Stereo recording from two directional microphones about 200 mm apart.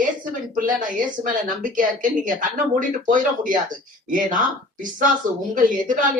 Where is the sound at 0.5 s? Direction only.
40° right (ahead or behind).